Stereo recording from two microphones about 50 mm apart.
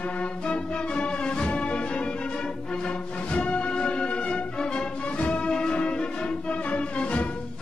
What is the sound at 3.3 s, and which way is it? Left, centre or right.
Music, left.